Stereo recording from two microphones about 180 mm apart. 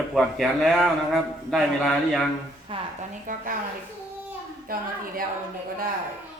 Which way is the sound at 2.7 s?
30° right (ahead or behind).